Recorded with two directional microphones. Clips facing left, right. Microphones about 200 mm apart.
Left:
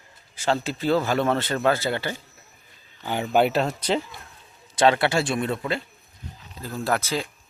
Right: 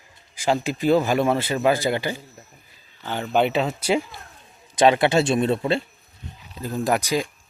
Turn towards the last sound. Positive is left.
turn(degrees=-15)  # may be behind; listen again after turning